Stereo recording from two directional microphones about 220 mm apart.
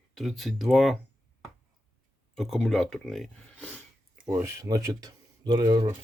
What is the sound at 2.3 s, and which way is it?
Speech, centre (ahead or behind).